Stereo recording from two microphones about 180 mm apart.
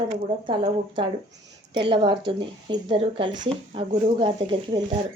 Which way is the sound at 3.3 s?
45° right (ahead or behind).